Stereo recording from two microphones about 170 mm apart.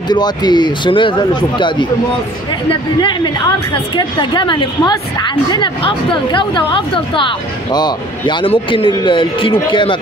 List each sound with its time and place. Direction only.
0.1 s a woman's voice: 25° left (ahead or behind)
3.0 s a woman's voice: 25° left (ahead or behind)